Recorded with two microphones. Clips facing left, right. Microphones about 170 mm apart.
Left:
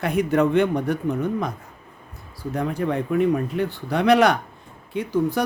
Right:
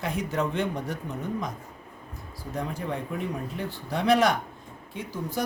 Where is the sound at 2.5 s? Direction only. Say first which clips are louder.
Left 7 dB; 65° left (ahead or behind).